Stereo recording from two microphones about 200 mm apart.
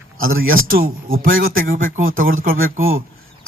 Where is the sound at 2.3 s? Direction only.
85° right.